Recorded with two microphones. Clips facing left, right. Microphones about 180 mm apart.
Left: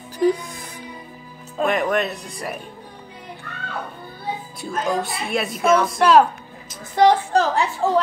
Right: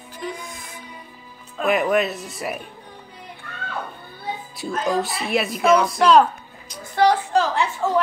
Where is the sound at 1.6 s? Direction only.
5° right (ahead or behind).